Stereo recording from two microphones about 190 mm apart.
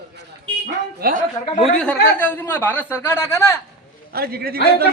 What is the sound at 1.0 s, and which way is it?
Speech, 55° right (ahead or behind).